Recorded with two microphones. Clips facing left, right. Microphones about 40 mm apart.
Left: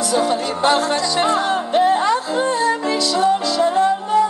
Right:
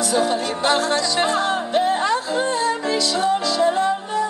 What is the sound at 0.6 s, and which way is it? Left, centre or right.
Music, left.